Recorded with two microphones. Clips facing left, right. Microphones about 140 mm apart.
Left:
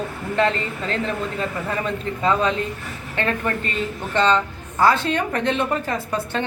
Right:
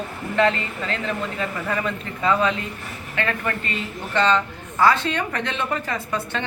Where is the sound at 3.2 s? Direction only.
35° left (ahead or behind).